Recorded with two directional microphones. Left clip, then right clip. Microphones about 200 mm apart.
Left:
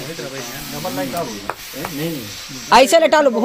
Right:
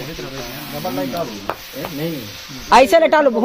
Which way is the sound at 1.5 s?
60° right (ahead or behind).